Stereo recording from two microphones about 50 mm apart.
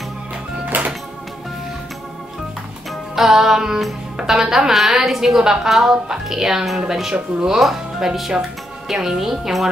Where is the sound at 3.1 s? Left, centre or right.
Centre.